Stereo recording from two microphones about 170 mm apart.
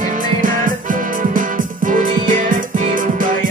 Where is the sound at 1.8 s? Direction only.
50° right (ahead or behind).